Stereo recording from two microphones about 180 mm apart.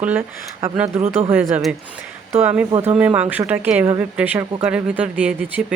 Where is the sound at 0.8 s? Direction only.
40° right (ahead or behind).